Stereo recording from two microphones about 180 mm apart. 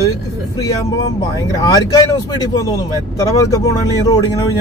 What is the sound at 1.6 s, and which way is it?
Speech, 20° left (ahead or behind).